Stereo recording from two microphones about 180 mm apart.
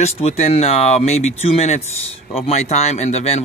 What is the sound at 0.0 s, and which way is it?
Speech, 35° left (ahead or behind).